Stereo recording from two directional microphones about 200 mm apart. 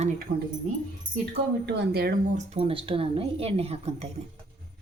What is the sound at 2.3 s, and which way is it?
Speech, 30° right (ahead or behind).